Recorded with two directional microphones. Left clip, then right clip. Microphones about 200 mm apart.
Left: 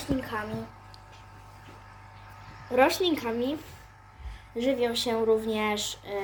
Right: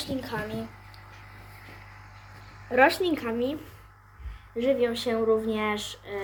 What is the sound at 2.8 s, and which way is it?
Speech, 25° left (ahead or behind).